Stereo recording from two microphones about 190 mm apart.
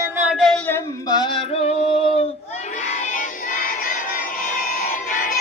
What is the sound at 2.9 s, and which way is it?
Music, 45° left (ahead or behind).